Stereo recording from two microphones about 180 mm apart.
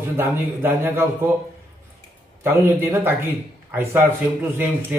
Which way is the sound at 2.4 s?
15° right (ahead or behind).